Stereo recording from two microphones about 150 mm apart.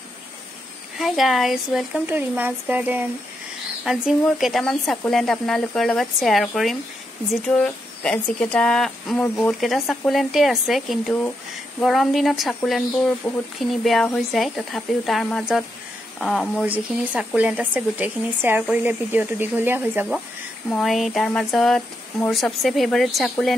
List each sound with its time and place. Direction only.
0.9 s speech: centre (ahead or behind)
2.0 s speech: 15° right (ahead or behind)
13.2 s speech: 10° left (ahead or behind)
16.6 s speech: 10° right (ahead or behind)
20.7 s speech: centre (ahead or behind)